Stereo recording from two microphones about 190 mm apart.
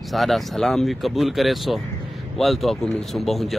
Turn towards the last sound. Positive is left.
turn(degrees=0)  # may be behind; listen again after turning